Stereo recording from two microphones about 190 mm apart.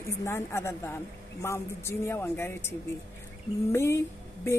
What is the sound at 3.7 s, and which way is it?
Speech, 15° left (ahead or behind).